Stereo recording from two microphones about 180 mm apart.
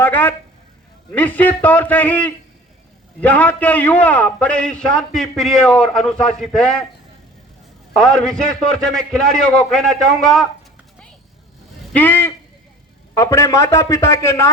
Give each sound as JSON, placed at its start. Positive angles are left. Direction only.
{"t": 0.0, "sound": "a man's voice", "side_deg": 10}
{"t": 7.9, "sound": "a man's voice", "side_deg": 5}
{"t": 11.9, "sound": "a man's voice", "side_deg": 10}